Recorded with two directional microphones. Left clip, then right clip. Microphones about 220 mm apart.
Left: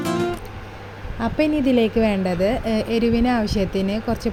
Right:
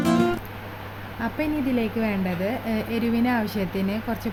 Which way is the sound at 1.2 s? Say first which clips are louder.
Left 6 dB; 20° left (ahead or behind).